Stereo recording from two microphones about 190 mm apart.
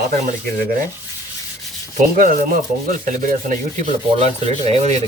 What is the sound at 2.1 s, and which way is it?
Rub, 45° right (ahead or behind).